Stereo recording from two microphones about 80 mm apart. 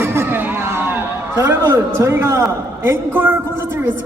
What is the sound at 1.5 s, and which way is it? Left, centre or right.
A man's voice, right.